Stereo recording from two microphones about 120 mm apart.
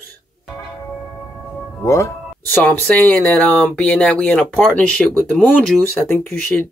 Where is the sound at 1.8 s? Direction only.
25° left (ahead or behind).